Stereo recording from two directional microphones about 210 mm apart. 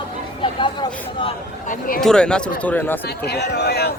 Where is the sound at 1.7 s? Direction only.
45° left (ahead or behind).